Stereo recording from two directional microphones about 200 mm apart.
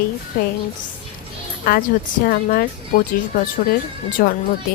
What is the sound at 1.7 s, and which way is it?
Speech, 45° left (ahead or behind).